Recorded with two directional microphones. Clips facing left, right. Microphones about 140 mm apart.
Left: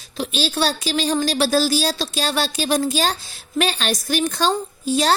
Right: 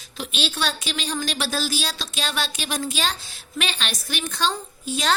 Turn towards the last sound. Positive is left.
turn(degrees=35)  # may be behind; listen again after turning